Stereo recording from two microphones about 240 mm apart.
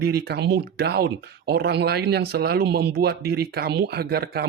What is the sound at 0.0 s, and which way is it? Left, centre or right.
Speech, right.